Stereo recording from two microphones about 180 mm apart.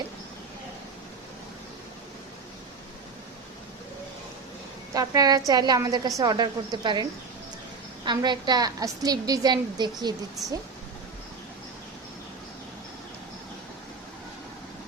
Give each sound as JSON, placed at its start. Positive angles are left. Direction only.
{"t": 4.9, "sound": "a woman's voice", "side_deg": -20}